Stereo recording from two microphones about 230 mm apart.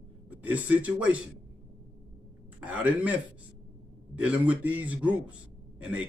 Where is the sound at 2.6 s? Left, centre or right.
Centre.